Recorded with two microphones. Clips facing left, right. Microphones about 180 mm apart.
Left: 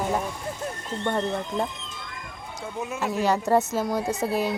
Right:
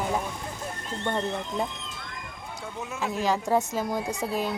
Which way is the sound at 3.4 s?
10° right (ahead or behind).